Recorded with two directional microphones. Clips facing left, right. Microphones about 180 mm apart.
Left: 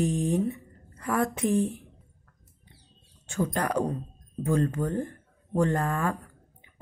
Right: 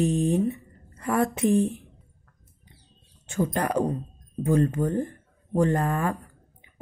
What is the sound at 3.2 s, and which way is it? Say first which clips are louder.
A woman's voice: right 2 dB; 20° right (ahead or behind).